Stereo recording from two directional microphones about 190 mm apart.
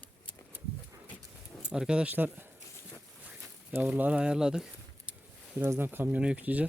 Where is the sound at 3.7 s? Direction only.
10° right (ahead or behind).